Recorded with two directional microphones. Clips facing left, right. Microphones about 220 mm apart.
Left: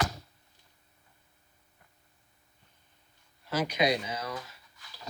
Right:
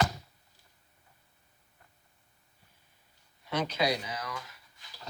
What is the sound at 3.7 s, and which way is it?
Speech, 20° left (ahead or behind).